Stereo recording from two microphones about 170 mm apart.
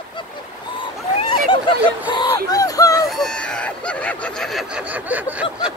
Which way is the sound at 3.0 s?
Centre (ahead or behind).